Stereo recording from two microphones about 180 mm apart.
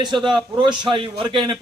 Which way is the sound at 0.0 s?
25° right (ahead or behind).